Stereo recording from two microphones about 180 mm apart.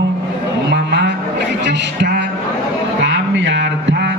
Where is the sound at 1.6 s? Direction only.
70° right (ahead or behind).